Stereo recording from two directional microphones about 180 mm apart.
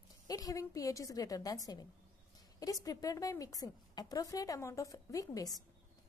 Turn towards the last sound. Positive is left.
turn(degrees=20)  # may be behind; listen again after turning